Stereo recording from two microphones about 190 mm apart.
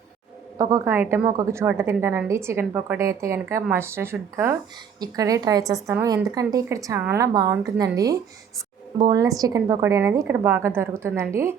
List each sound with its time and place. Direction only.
0.6 s a woman's voice: 15° right (ahead or behind)